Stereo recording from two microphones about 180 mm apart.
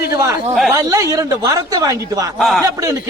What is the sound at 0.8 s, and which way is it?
A man's voice, 20° right (ahead or behind).